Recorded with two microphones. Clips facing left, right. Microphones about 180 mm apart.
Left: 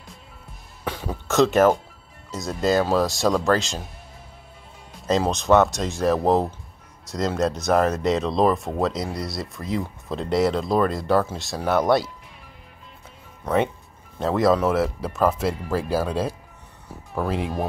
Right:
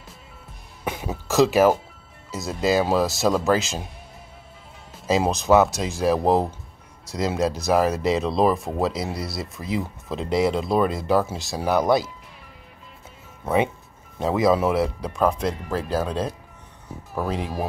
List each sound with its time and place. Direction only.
0.8 s speech: 10° right (ahead or behind)
4.9 s speech: 5° right (ahead or behind)
14.2 s speech: centre (ahead or behind)